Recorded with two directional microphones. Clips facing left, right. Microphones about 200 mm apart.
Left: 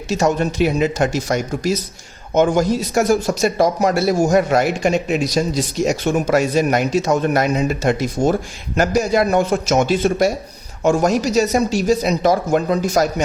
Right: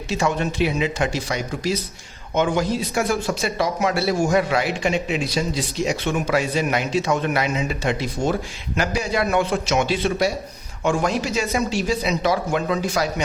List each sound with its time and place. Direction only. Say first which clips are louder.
0.1 s speech: left 5 dB; 45° left (ahead or behind)